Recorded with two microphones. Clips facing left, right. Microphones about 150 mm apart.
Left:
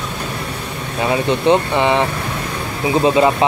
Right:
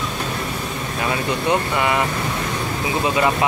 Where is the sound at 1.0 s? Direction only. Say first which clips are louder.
Left 7 dB; 25° left (ahead or behind).